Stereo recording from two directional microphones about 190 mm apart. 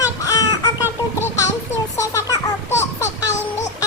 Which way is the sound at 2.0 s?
15° left (ahead or behind).